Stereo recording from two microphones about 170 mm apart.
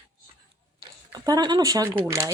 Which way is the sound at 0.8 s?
25° right (ahead or behind).